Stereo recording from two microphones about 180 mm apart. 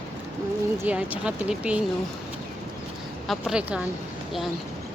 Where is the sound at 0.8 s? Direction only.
10° right (ahead or behind).